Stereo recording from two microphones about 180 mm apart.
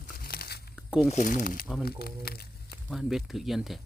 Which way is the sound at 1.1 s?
45° left (ahead or behind).